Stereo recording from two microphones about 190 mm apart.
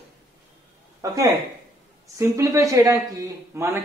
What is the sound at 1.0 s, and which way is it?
A man's voice, 15° right (ahead or behind).